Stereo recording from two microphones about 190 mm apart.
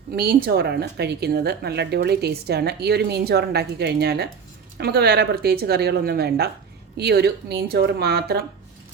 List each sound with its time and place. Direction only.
0.1 s a woman's voice: 55° right (ahead or behind)